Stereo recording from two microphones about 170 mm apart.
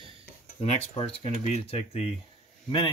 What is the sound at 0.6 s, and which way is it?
Speech, 35° left (ahead or behind).